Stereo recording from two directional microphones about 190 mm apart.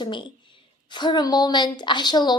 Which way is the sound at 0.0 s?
25° left (ahead or behind).